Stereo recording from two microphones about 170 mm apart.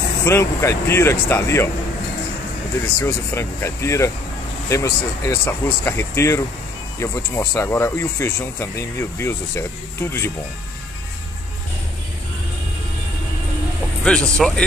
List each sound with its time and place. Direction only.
0.2 s speech: 15° left (ahead or behind)
3.0 s speech: 15° left (ahead or behind)
14.0 s speech: 5° left (ahead or behind)